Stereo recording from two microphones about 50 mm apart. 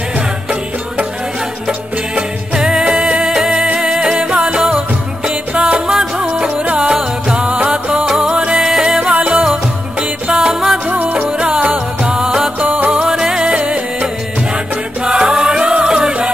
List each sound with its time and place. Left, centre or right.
1.7 s music: centre
6.6 s music: right
10.5 s music: centre
10.9 s music: right
11.2 s music: centre
12.5 s music: right
13.0 s music: centre
13.5 s music: right
15.0 s music: centre